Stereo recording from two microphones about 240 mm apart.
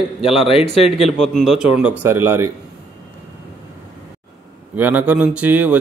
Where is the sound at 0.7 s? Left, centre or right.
Left.